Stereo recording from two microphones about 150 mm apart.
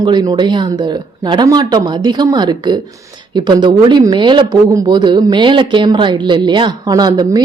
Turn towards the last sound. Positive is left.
turn(degrees=-30)  # may be behind; listen again after turning